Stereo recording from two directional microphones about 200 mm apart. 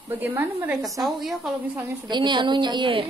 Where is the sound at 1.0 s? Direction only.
Centre (ahead or behind).